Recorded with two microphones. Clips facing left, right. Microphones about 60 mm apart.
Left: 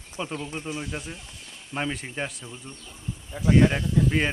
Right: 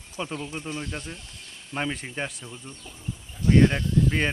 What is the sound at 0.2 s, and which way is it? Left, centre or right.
Speech, centre.